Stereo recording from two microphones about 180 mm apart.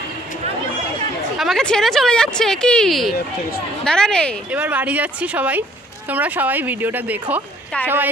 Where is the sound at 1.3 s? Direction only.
Centre (ahead or behind).